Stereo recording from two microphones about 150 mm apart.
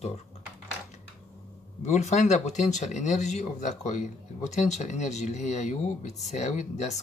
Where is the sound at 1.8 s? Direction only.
50° left (ahead or behind).